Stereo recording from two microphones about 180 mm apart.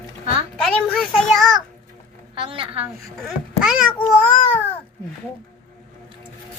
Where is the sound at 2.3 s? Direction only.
30° right (ahead or behind).